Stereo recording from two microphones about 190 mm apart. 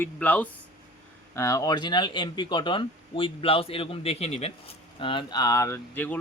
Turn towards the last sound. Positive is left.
turn(degrees=10)  # may be behind; listen again after turning